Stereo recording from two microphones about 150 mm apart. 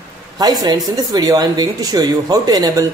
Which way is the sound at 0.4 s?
25° right (ahead or behind).